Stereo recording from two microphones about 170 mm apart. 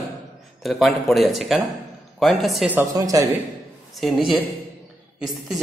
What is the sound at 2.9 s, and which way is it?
Speech, 20° right (ahead or behind).